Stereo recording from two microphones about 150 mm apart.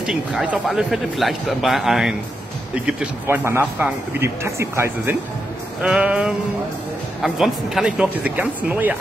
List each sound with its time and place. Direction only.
0.0 s speech: 5° right (ahead or behind)
5.8 s speech: 5° right (ahead or behind)